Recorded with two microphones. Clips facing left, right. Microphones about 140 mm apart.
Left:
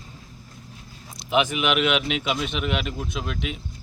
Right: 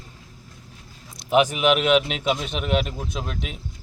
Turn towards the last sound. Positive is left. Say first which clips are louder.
# left 1 dB
turn(degrees=-40)  # may be behind; listen again after turning